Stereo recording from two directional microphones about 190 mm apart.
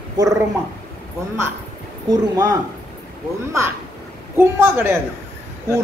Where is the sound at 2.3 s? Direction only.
20° right (ahead or behind).